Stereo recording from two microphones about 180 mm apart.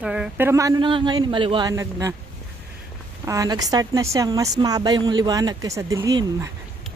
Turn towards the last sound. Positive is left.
turn(degrees=-15)  # may be behind; listen again after turning